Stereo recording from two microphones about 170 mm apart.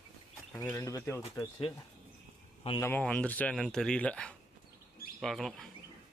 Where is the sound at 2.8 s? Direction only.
10° left (ahead or behind).